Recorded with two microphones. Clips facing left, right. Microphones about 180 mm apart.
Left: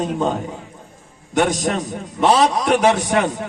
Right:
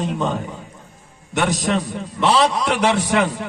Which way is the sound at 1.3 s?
45° left (ahead or behind).